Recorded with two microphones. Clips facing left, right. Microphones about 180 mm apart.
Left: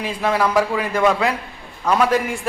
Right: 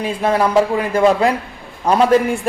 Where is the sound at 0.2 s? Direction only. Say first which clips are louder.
Right 3 dB; 25° right (ahead or behind).